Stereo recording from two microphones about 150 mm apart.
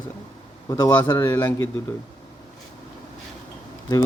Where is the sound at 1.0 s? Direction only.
20° left (ahead or behind).